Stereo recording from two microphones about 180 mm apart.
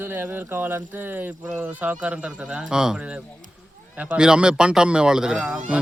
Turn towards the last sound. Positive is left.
turn(degrees=-5)  # may be behind; listen again after turning